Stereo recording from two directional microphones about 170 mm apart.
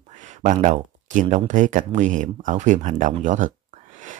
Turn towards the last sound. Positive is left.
turn(degrees=-50)  # may be behind; listen again after turning